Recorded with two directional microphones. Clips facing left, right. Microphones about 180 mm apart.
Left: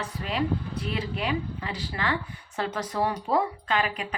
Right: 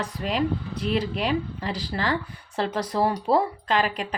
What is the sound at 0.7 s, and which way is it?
Speech, 35° right (ahead or behind).